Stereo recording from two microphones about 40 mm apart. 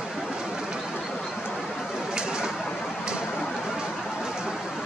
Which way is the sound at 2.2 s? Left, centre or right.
Centre.